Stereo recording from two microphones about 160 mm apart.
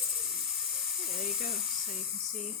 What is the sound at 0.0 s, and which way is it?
Electric toothbrush, centre (ahead or behind).